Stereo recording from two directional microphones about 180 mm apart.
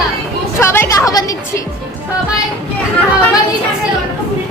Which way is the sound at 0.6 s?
15° left (ahead or behind).